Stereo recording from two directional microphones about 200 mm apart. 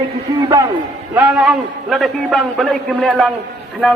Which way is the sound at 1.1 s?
5° right (ahead or behind).